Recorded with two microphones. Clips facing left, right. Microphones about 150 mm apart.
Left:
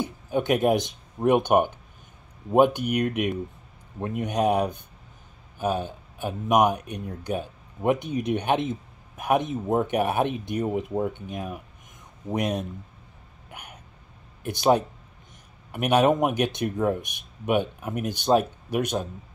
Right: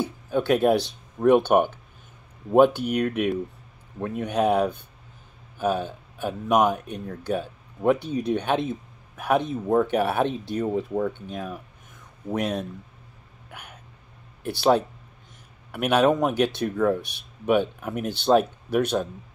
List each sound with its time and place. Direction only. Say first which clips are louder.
0.0 s speech: right 1 dB; 15° left (ahead or behind)
14.4 s speech: right 1 dB; 15° left (ahead or behind)
15.9 s speech: even; 15° left (ahead or behind)